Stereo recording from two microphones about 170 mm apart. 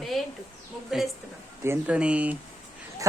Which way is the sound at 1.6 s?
10° right (ahead or behind).